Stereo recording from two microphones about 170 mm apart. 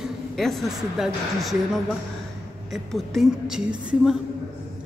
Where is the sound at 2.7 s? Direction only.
Centre (ahead or behind).